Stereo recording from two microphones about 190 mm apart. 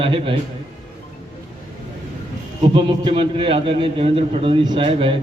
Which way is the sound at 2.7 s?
25° right (ahead or behind).